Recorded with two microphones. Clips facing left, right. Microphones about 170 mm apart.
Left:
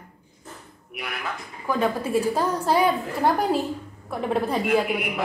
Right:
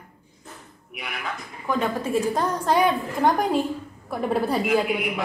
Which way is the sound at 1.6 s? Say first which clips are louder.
Left 1 dB; 5° left (ahead or behind).